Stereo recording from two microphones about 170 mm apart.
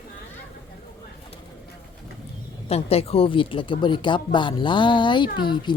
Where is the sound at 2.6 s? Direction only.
35° left (ahead or behind).